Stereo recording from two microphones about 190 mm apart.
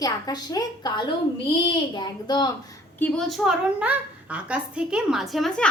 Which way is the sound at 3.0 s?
5° left (ahead or behind).